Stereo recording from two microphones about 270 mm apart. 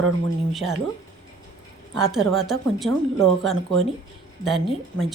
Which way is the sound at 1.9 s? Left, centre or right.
Centre.